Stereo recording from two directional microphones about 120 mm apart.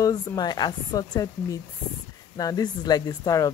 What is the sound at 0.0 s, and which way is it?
Speech, 30° left (ahead or behind).